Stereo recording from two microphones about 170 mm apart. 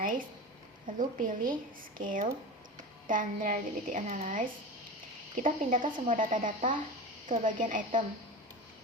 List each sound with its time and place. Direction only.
0.0 s a woman's voice: 55° right (ahead or behind)